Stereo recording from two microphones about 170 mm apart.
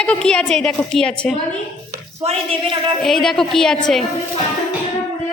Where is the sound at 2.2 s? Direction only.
35° right (ahead or behind).